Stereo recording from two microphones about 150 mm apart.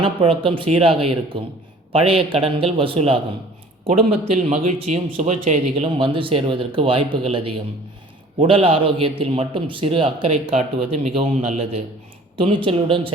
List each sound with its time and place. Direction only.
0.0 s a man's voice: 35° right (ahead or behind)